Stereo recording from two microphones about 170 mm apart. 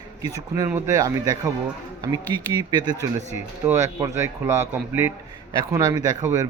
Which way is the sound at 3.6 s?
15° right (ahead or behind).